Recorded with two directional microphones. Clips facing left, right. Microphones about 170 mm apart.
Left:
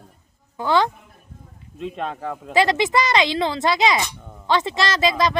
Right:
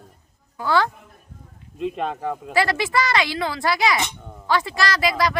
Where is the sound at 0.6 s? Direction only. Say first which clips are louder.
Left 2 dB; 20° left (ahead or behind).